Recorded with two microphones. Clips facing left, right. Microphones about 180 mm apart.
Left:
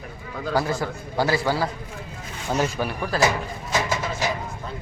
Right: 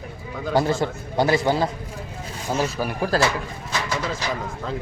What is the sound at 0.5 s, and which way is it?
A man's voice, 25° right (ahead or behind).